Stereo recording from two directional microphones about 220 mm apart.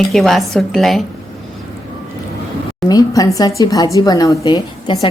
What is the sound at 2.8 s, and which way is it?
A woman's voice, 15° left (ahead or behind).